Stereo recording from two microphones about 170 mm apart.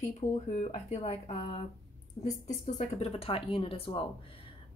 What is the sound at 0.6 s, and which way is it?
Speech, 40° left (ahead or behind).